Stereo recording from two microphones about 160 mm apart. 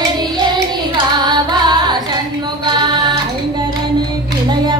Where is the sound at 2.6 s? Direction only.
25° right (ahead or behind).